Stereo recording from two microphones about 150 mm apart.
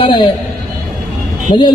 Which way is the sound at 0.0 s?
35° left (ahead or behind).